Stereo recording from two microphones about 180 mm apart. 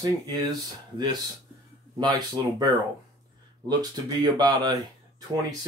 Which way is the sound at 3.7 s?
25° right (ahead or behind).